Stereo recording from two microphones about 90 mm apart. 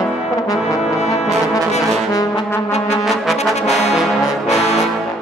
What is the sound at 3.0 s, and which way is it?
Brass instrument, centre (ahead or behind).